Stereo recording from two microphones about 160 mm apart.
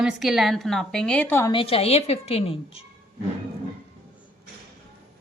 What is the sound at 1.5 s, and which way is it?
A woman's voice, 35° left (ahead or behind).